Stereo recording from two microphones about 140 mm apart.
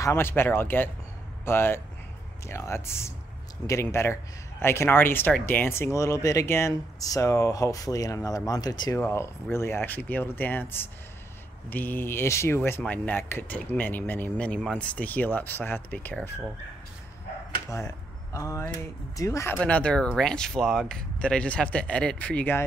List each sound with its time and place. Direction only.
0.0 s a man's voice: 15° left (ahead or behind)
9.0 s speech: 20° left (ahead or behind)
17.6 s a man's voice: 25° left (ahead or behind)
19.5 s speech: 10° left (ahead or behind)